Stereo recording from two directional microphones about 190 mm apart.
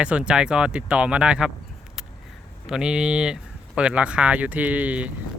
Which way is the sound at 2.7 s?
5° right (ahead or behind).